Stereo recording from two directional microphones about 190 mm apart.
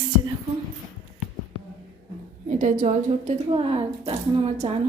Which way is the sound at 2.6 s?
40° right (ahead or behind).